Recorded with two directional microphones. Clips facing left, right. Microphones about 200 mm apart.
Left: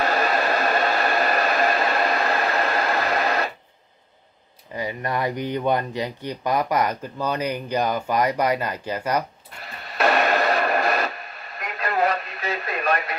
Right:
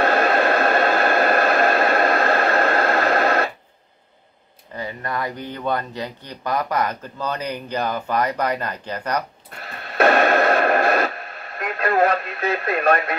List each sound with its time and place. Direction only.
0.0 s a sound: 55° right (ahead or behind)
4.7 s speech: 15° left (ahead or behind)
9.9 s radio: 50° right (ahead or behind)